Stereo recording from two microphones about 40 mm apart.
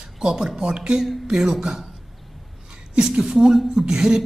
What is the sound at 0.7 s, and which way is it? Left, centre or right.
A woman's voice, right.